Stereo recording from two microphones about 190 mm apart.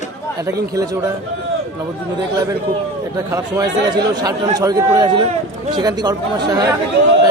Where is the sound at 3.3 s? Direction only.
15° right (ahead or behind).